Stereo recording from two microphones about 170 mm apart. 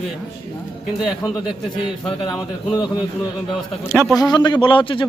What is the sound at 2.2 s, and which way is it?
Speech, 25° left (ahead or behind).